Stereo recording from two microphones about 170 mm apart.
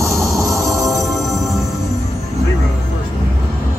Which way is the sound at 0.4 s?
20° right (ahead or behind).